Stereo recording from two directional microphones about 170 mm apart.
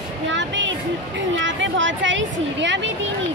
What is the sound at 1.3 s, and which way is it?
Speech, 90° right.